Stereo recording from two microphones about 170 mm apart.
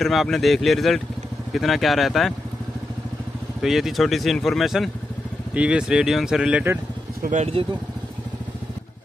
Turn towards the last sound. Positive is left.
turn(degrees=-45)  # may be behind; listen again after turning